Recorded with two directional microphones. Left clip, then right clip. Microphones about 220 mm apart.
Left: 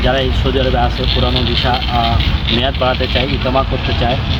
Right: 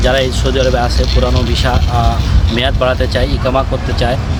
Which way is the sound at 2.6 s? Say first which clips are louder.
Right 4 dB; 20° right (ahead or behind).